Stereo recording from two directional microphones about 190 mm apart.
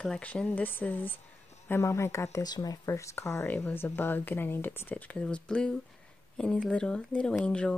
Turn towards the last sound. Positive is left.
turn(degrees=5)  # may be behind; listen again after turning